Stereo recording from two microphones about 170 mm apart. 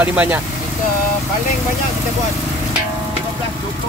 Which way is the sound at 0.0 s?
10° right (ahead or behind).